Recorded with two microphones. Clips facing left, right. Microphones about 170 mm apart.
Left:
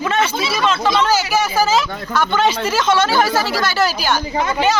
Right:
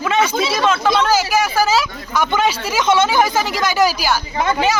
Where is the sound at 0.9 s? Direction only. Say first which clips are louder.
Even; 10° right (ahead or behind).